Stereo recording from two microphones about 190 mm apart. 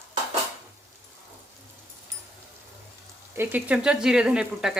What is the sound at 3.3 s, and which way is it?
Speech, 10° right (ahead or behind).